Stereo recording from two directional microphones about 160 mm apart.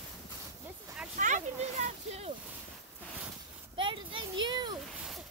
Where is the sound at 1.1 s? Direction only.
55° right (ahead or behind).